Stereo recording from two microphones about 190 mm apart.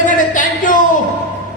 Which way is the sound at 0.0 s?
45° left (ahead or behind).